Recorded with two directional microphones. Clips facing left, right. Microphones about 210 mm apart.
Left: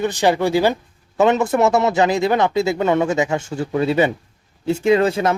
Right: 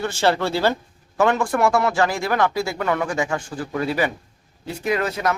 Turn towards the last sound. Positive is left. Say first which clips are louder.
# left 7 dB
turn(degrees=25)  # may be behind; listen again after turning